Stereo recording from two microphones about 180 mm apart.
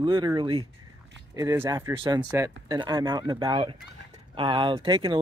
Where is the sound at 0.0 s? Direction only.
25° right (ahead or behind).